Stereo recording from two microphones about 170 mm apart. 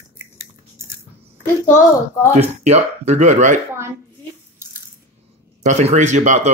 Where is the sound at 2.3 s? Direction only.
40° right (ahead or behind).